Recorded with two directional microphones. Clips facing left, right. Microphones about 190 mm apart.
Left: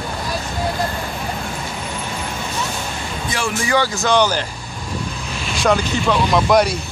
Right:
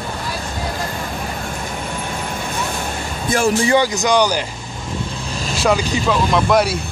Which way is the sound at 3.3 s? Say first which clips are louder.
Right 8 dB; 45° right (ahead or behind).